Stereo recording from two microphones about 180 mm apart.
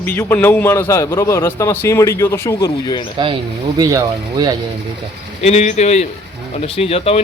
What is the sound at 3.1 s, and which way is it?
Speech, 25° right (ahead or behind).